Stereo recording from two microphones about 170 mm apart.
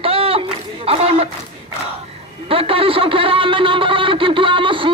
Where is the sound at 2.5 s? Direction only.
35° right (ahead or behind).